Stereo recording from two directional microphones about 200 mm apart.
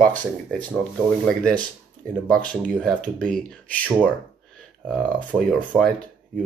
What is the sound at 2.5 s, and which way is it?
Speech, 5° left (ahead or behind).